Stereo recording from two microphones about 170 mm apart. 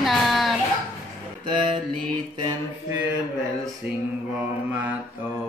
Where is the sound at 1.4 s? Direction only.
30° right (ahead or behind).